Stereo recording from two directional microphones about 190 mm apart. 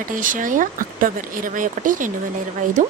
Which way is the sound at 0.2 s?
45° right (ahead or behind).